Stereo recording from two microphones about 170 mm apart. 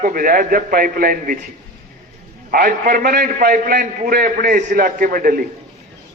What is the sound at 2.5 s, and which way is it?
A man's voice, 60° right (ahead or behind).